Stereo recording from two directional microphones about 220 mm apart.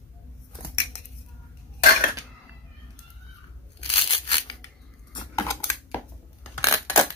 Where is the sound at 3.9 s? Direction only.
25° left (ahead or behind).